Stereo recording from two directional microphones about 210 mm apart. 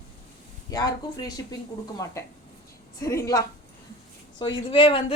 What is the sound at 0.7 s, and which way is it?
Speech, 15° left (ahead or behind).